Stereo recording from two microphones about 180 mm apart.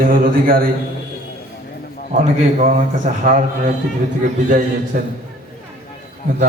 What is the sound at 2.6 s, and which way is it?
A man's voice, 45° right (ahead or behind).